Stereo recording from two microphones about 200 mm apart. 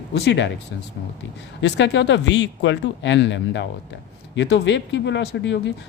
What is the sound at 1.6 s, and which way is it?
Speech, 60° left (ahead or behind).